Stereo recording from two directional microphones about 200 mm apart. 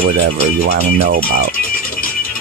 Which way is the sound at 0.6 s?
50° right (ahead or behind).